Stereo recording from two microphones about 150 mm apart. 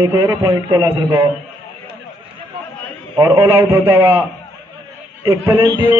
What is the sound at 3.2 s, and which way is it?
Speech, 15° right (ahead or behind).